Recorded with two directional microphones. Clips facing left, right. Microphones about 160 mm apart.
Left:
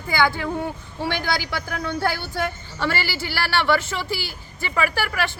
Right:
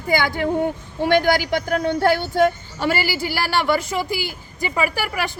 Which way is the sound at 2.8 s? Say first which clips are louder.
Right 4 dB; 15° right (ahead or behind).